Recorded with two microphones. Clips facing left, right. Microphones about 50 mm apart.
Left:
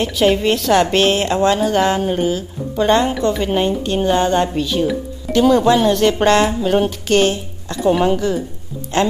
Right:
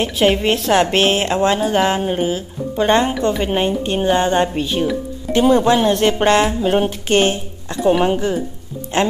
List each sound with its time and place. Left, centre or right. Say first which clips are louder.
0.0 s a woman's voice: left 1 dB; right